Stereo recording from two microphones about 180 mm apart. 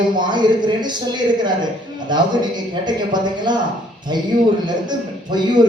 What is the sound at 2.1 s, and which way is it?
A man's voice, 25° right (ahead or behind).